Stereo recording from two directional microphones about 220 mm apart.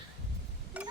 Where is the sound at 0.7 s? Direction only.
5° right (ahead or behind).